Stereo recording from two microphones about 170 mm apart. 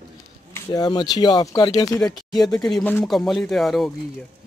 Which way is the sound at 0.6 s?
20° left (ahead or behind).